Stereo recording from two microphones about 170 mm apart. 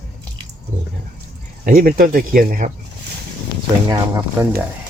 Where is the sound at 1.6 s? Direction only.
55° right (ahead or behind).